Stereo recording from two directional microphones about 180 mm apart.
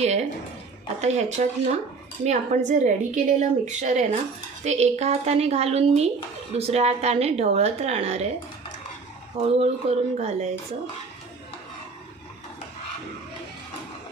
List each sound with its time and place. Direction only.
0.0 s a sound: 35° right (ahead or behind)
1.0 s speech: 40° right (ahead or behind)
9.4 s speech: 35° right (ahead or behind)